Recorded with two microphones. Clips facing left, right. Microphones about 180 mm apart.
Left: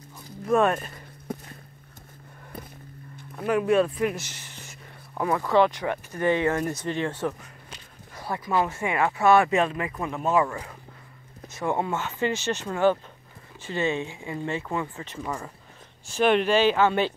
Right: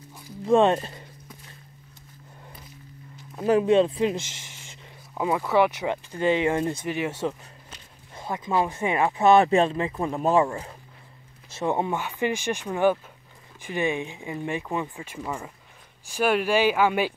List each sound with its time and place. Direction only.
0.5 s speech: 25° right (ahead or behind)
3.3 s speech: 30° right (ahead or behind)
5.1 s speech: 10° right (ahead or behind)